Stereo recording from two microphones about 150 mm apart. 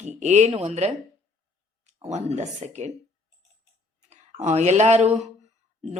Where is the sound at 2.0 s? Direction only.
50° right (ahead or behind).